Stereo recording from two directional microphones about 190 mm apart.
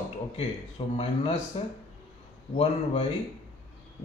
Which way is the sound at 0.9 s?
35° left (ahead or behind).